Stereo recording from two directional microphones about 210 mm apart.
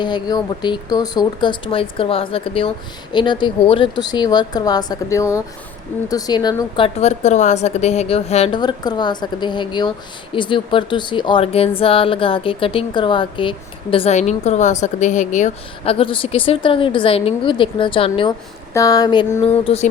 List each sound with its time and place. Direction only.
0.0 s speech: 20° left (ahead or behind)
18.7 s a sound: 15° left (ahead or behind)
19.6 s speech: 30° left (ahead or behind)